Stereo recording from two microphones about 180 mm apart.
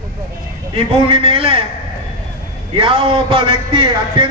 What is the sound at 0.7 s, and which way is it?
Speech, 30° right (ahead or behind).